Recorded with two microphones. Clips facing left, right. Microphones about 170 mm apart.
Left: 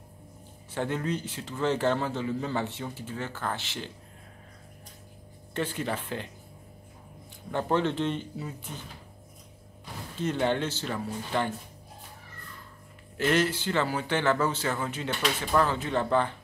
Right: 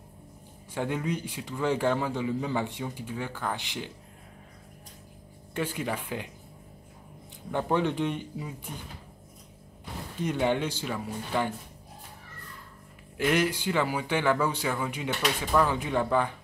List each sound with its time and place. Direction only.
0.7 s a man's voice: 10° right (ahead or behind)
5.5 s a man's voice: 10° right (ahead or behind)
7.5 s a man's voice: 10° right (ahead or behind)
10.1 s a man's voice: 10° right (ahead or behind)
13.2 s a man's voice: 10° right (ahead or behind)